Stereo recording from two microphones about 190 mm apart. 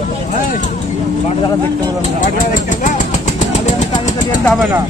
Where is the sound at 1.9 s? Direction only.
40° left (ahead or behind).